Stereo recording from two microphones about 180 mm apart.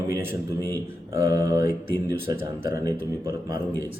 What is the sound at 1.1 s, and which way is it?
Speech, 15° right (ahead or behind).